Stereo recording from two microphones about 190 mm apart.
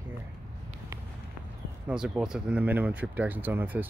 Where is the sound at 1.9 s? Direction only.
5° right (ahead or behind).